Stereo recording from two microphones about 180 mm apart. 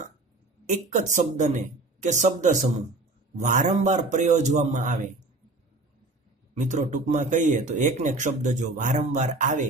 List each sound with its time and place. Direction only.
0.9 s a man's voice: 45° right (ahead or behind)
6.5 s speech: 40° right (ahead or behind)